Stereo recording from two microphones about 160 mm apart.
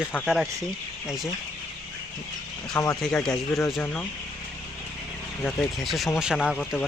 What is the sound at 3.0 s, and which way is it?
A man's voice, 5° left (ahead or behind).